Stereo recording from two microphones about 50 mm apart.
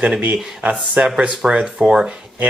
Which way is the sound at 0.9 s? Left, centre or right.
Centre.